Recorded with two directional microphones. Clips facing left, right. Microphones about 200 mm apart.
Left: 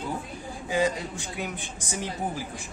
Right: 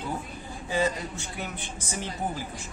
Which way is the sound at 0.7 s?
15° left (ahead or behind).